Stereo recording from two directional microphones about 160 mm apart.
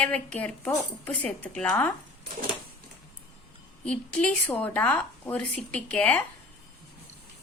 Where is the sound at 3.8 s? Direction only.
5° left (ahead or behind).